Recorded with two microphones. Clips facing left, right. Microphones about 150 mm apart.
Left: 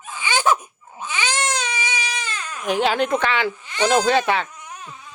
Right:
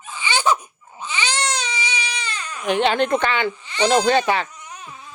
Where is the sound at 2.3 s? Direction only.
5° left (ahead or behind).